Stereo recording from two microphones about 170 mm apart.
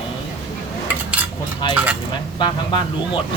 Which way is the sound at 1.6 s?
25° left (ahead or behind).